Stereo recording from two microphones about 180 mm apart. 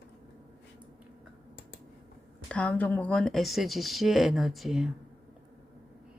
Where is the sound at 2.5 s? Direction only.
5° left (ahead or behind).